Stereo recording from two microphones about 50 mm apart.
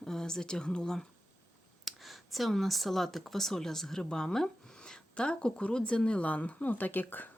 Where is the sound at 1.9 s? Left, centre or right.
Centre.